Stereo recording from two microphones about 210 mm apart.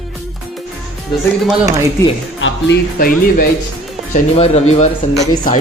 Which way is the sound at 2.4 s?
65° left (ahead or behind).